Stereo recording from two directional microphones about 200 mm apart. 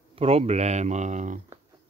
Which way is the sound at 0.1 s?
30° right (ahead or behind).